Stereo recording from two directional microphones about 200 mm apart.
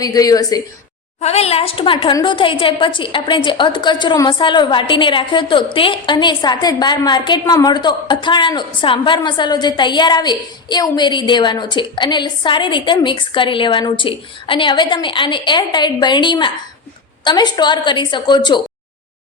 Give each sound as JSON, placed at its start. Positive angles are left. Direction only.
{"t": 0.0, "sound": "speech", "side_deg": 20}
{"t": 1.2, "sound": "a woman's voice", "side_deg": 30}